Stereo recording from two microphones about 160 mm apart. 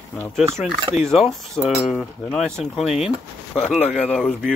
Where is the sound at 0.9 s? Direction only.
Centre (ahead or behind).